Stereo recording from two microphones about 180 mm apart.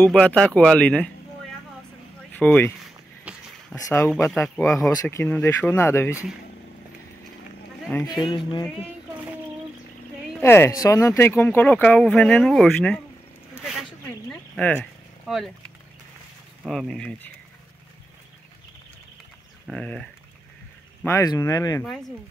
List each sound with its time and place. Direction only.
0.0 s speech: 5° left (ahead or behind)
2.3 s speech: 10° left (ahead or behind)
3.3 s a sound: 5° right (ahead or behind)
3.7 s speech: 15° left (ahead or behind)
8.1 s speech: 25° left (ahead or behind)
10.4 s speech: 15° left (ahead or behind)
14.5 s speech: 10° left (ahead or behind)
16.6 s speech: centre (ahead or behind)
19.7 s speech: 5° left (ahead or behind)
21.0 s speech: 15° left (ahead or behind)